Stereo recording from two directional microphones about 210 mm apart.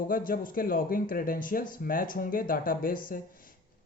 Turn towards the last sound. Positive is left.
turn(degrees=40)  # may be behind; listen again after turning